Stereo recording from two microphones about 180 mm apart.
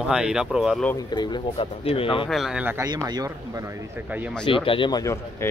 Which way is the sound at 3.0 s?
20° right (ahead or behind).